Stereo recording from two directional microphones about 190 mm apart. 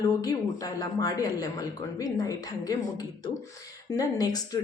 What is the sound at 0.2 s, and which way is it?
Speech, 20° left (ahead or behind).